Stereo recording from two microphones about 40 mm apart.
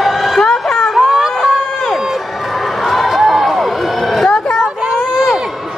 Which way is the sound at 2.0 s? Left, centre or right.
Centre.